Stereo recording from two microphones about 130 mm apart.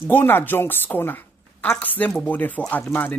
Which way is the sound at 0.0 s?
15° left (ahead or behind).